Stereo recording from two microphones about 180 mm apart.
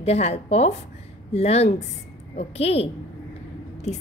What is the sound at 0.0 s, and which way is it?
A woman's voice, 35° left (ahead or behind).